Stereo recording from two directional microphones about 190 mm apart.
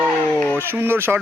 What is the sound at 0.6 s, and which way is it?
Speech, 10° right (ahead or behind).